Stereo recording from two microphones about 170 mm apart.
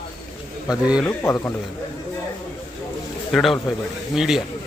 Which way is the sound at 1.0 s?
15° left (ahead or behind).